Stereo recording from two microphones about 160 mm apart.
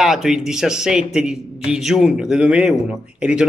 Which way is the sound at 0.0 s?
Centre (ahead or behind).